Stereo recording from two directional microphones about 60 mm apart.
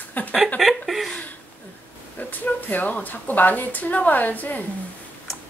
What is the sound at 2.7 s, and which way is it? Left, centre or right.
A woman's voice, left.